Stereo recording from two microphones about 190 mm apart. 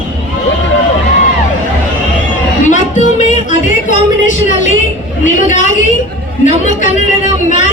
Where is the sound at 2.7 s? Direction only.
40° left (ahead or behind).